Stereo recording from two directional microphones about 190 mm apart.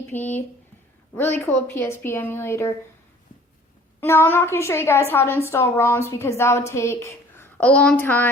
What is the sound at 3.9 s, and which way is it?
A woman's voice, 15° left (ahead or behind).